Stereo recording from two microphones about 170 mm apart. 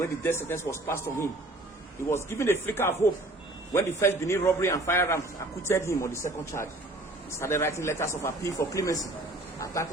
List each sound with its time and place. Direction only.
0.0 s speech: 15° left (ahead or behind)